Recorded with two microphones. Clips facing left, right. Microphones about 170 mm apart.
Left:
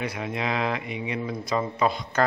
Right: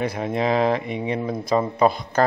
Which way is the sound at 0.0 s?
35° right (ahead or behind).